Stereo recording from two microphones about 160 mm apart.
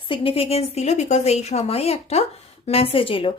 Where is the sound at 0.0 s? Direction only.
35° left (ahead or behind).